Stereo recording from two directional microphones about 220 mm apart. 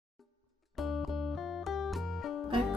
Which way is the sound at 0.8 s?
Centre (ahead or behind).